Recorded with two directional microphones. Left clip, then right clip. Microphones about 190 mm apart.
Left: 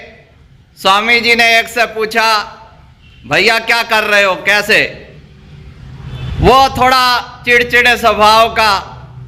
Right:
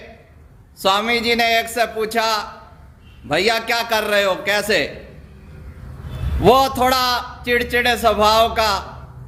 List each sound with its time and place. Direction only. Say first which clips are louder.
0.8 s a man's voice: left 8 dB; 15° right (ahead or behind)
6.4 s a man's voice: left 6 dB; 15° right (ahead or behind)